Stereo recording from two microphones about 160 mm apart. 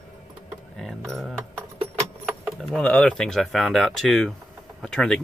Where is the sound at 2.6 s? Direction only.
5° left (ahead or behind).